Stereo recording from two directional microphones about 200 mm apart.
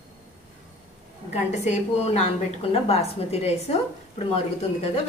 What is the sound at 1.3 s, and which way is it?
A woman's voice, 35° left (ahead or behind).